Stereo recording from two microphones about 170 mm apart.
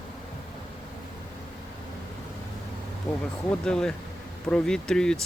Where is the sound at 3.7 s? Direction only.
5° left (ahead or behind).